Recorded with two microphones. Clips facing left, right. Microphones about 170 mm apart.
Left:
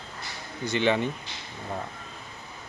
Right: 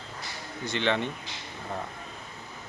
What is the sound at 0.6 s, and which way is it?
Speech, 5° left (ahead or behind).